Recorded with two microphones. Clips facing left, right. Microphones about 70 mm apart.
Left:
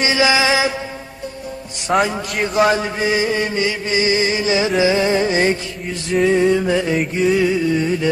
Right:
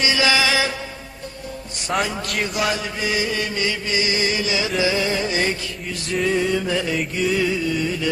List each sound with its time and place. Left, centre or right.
0.0 s music: left
1.9 s chant: left